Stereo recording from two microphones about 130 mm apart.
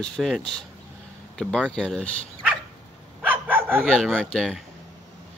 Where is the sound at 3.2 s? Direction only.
15° right (ahead or behind).